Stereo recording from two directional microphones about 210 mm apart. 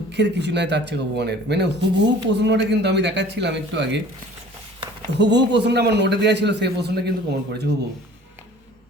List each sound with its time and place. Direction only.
0.1 s speech: 55° right (ahead or behind)
5.1 s a man's voice: 55° right (ahead or behind)